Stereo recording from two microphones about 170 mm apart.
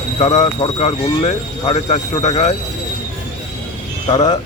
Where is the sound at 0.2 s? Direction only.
35° left (ahead or behind).